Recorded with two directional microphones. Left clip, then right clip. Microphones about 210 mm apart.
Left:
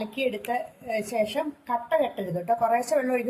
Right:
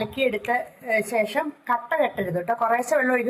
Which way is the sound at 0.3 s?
10° right (ahead or behind).